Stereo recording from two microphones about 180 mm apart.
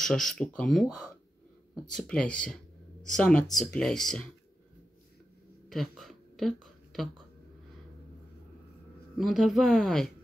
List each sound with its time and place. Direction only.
0.0 s speech: 5° left (ahead or behind)
5.7 s a sound: centre (ahead or behind)
9.1 s speech: centre (ahead or behind)